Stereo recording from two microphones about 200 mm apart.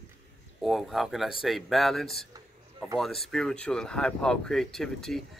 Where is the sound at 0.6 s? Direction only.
Centre (ahead or behind).